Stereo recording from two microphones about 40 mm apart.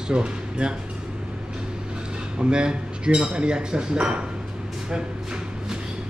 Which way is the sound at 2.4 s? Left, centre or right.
Right.